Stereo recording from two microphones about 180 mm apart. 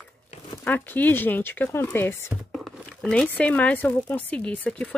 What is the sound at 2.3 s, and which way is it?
Speech, centre (ahead or behind).